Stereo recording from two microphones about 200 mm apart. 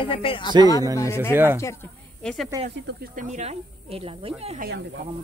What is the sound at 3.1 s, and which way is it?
Speech, 35° right (ahead or behind).